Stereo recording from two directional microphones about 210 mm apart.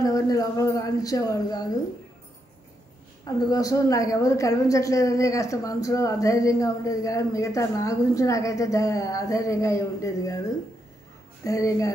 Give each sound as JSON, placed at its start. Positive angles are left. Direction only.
{"t": 0.0, "sound": "a woman's voice", "side_deg": 15}
{"t": 3.3, "sound": "a woman's voice", "side_deg": 15}
{"t": 11.4, "sound": "a woman's voice", "side_deg": 15}